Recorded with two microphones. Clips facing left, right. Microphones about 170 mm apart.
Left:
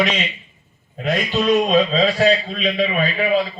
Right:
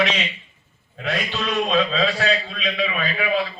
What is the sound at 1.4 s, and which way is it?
A man's voice, 40° left (ahead or behind).